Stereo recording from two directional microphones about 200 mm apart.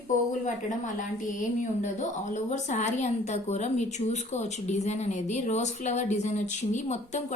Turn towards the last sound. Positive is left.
turn(degrees=35)  # may be behind; listen again after turning